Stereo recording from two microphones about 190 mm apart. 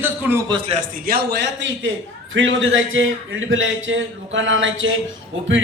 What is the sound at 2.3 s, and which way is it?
A man's voice, 90° right.